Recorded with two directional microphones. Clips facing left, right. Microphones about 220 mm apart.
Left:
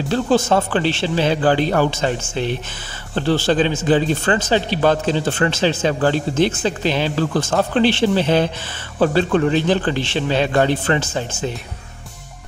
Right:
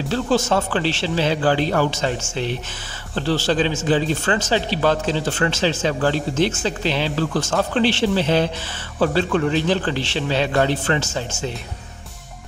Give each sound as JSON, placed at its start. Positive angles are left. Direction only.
{"t": 0.1, "sound": "speech", "side_deg": 55}